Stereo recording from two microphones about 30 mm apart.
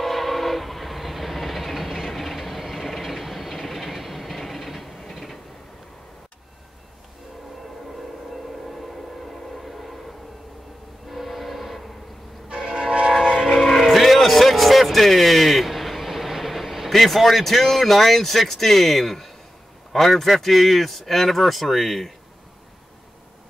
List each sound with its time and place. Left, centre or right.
0.0 s train: centre
8.3 s civil defense siren: centre
11.1 s train: centre
12.5 s train: centre
13.6 s a sound: centre
13.8 s a sound: centre
16.9 s speech: centre